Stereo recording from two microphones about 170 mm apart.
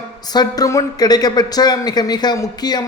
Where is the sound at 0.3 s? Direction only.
20° left (ahead or behind).